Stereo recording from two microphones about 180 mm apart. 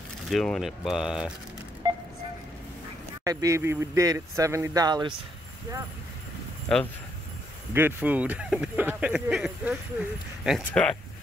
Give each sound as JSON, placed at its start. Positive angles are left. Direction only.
{"t": 0.3, "sound": "speech", "side_deg": 0}
{"t": 3.3, "sound": "speech", "side_deg": -20}
{"t": 6.7, "sound": "speech", "side_deg": 5}
{"t": 7.7, "sound": "speech", "side_deg": -10}